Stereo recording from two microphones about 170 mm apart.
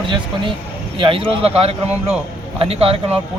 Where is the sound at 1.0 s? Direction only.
30° right (ahead or behind).